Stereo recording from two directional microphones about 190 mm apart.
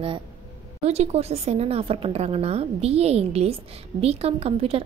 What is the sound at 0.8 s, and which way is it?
A woman's voice, 35° right (ahead or behind).